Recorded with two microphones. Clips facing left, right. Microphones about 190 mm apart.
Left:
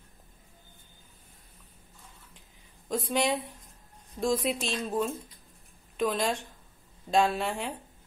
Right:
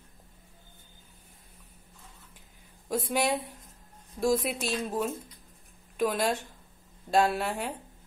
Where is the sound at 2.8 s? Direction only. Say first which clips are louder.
Even; 5° right (ahead or behind).